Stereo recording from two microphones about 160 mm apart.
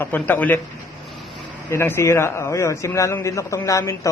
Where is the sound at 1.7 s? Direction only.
15° left (ahead or behind).